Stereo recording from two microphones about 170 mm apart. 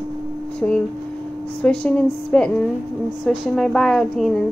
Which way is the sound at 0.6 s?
5° left (ahead or behind).